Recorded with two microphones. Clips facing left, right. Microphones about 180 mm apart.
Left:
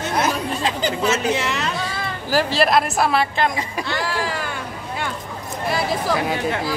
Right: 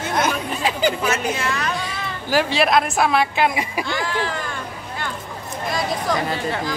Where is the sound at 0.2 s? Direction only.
Centre (ahead or behind).